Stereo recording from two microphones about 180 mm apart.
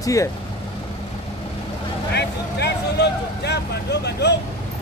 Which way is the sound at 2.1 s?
65° left (ahead or behind).